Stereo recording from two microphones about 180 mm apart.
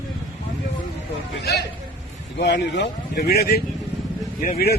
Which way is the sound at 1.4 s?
65° left (ahead or behind).